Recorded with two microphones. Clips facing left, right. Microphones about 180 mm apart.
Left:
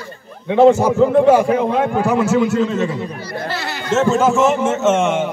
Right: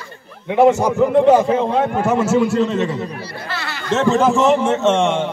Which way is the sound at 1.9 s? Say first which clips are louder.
Even; 10° left (ahead or behind).